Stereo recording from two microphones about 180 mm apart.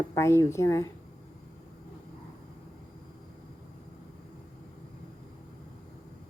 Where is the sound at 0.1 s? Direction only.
15° left (ahead or behind).